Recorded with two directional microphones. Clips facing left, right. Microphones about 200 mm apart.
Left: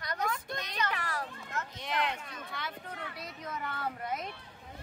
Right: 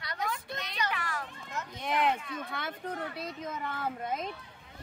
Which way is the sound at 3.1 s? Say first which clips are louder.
Right 3 dB; 20° right (ahead or behind).